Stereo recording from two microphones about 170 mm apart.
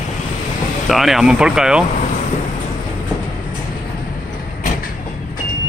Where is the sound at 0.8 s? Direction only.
Centre (ahead or behind).